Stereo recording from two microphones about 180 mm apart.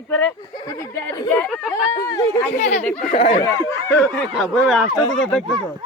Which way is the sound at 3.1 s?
45° left (ahead or behind).